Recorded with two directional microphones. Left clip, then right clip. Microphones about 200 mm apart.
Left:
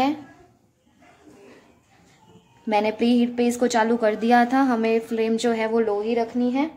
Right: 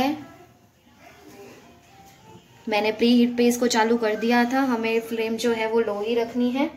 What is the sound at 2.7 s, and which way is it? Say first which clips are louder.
A woman's voice: even; 40° left (ahead or behind).